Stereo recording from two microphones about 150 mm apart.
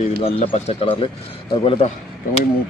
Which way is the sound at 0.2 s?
40° left (ahead or behind).